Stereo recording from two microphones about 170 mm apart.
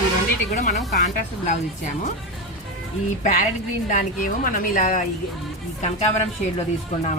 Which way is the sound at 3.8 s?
50° left (ahead or behind).